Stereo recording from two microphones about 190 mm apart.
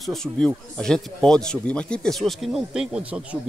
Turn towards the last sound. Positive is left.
turn(degrees=-5)  # may be behind; listen again after turning